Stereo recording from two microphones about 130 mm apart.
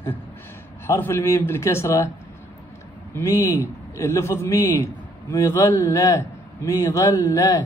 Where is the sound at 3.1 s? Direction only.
20° left (ahead or behind).